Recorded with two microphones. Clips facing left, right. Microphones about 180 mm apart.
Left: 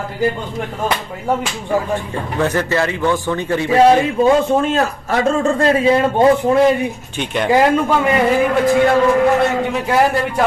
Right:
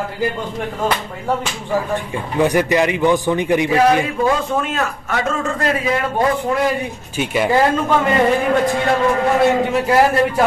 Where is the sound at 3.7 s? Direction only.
25° left (ahead or behind).